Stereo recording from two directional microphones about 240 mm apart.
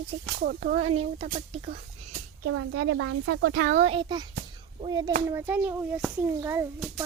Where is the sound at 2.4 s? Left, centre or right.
Right.